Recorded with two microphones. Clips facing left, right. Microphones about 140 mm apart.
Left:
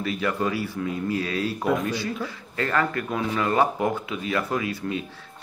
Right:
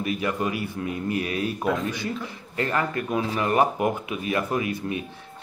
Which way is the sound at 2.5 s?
20° right (ahead or behind).